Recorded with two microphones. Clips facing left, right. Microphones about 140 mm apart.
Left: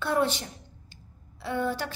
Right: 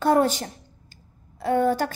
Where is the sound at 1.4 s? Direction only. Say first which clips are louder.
Right 8 dB; 45° right (ahead or behind).